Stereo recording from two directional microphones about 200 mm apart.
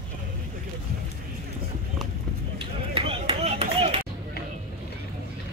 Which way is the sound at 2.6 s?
25° right (ahead or behind).